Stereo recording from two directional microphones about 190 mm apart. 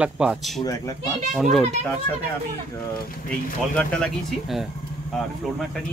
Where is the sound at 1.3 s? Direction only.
Centre (ahead or behind).